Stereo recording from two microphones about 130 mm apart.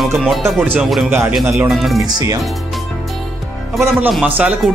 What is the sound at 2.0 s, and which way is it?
Speech, 30° right (ahead or behind).